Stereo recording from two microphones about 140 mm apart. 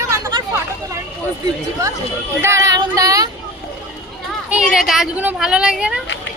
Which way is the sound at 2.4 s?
20° right (ahead or behind).